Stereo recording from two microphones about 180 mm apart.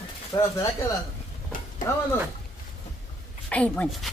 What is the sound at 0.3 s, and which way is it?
Speech, 20° left (ahead or behind).